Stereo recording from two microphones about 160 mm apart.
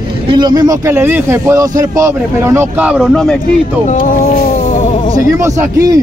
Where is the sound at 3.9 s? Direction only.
55° left (ahead or behind).